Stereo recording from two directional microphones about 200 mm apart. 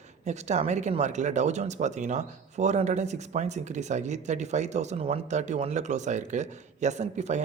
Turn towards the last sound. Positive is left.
turn(degrees=-35)  # may be behind; listen again after turning